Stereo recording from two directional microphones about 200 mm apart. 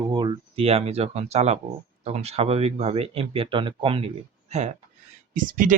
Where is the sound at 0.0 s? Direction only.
25° right (ahead or behind).